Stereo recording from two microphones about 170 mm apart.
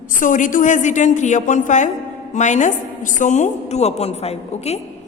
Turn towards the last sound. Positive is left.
turn(degrees=40)  # may be behind; listen again after turning